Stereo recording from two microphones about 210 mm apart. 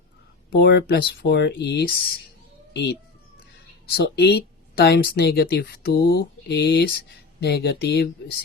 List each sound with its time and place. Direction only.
0.5 s speech: 50° left (ahead or behind)